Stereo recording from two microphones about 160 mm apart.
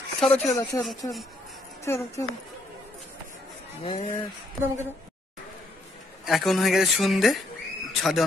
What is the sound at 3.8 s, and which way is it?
Speech, 35° left (ahead or behind).